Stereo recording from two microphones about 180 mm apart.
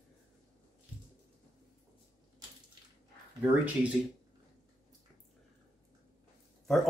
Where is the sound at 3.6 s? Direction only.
5° right (ahead or behind).